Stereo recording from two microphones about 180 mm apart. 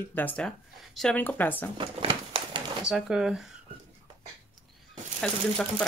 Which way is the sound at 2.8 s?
5° right (ahead or behind).